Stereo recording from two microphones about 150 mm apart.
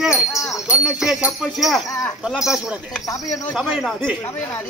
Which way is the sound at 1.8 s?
20° left (ahead or behind).